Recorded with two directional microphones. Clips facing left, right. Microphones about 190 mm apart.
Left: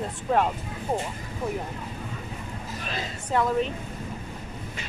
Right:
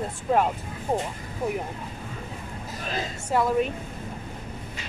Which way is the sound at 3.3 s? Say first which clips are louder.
Right 1 dB; 10° right (ahead or behind).